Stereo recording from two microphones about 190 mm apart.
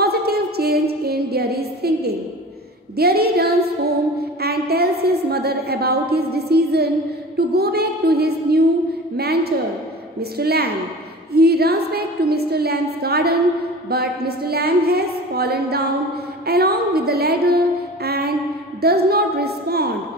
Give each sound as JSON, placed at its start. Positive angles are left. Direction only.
{"t": 0.0, "sound": "a sound", "side_deg": -55}
{"t": 3.0, "sound": "a woman's voice", "side_deg": -55}
{"t": 18.0, "sound": "music", "side_deg": -55}
{"t": 18.8, "sound": "a woman's voice", "side_deg": -55}